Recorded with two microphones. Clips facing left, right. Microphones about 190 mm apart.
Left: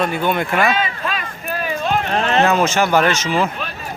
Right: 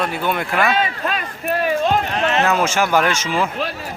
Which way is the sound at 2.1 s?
35° left (ahead or behind).